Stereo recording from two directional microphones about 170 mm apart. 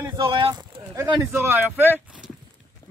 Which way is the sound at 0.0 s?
25° right (ahead or behind).